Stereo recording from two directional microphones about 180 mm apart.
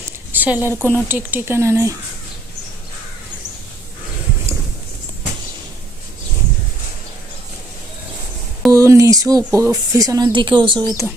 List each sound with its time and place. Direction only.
0.3 s a woman's voice: 10° right (ahead or behind)
8.7 s speech: 15° right (ahead or behind)